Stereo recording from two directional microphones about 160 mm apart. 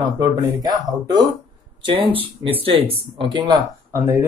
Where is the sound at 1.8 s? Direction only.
30° right (ahead or behind).